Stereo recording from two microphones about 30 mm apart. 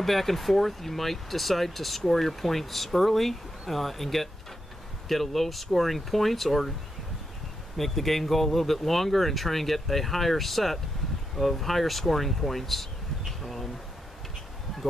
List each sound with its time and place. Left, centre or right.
0.0 s speech: centre
7.7 s speech: centre
13.4 s a sound: centre